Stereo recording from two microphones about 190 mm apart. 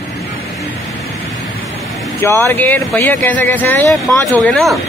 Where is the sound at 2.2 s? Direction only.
15° left (ahead or behind).